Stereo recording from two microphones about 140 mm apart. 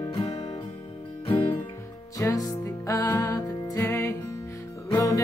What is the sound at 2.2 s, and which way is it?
Music, 25° left (ahead or behind).